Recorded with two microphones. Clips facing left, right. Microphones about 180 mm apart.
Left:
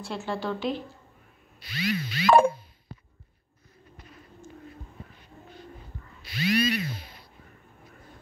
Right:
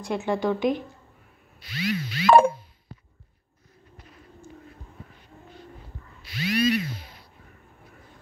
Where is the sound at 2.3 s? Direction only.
65° right (ahead or behind).